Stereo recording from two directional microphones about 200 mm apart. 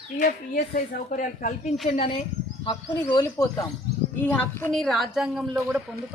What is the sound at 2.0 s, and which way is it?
Speech, 25° left (ahead or behind).